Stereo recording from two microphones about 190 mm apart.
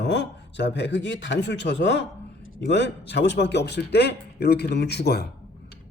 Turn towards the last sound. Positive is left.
turn(degrees=60)  # may be behind; listen again after turning